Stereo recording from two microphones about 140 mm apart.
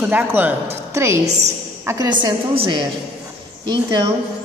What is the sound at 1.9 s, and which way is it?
A woman's voice, 30° right (ahead or behind).